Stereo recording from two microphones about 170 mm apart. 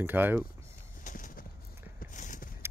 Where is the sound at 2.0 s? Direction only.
50° left (ahead or behind).